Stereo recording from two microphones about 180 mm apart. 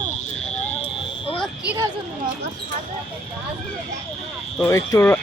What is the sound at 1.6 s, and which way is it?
Speech, 15° right (ahead or behind).